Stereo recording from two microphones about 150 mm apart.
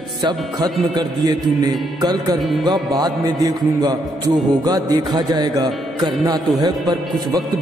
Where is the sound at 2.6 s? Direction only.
25° right (ahead or behind).